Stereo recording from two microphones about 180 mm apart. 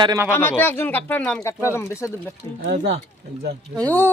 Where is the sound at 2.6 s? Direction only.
70° right (ahead or behind).